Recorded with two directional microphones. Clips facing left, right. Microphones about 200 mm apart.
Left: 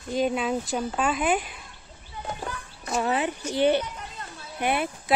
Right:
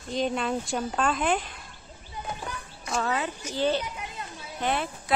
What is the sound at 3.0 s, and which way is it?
Speech, 15° left (ahead or behind).